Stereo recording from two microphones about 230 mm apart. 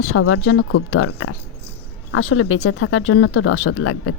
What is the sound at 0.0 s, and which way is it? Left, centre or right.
Speech, left.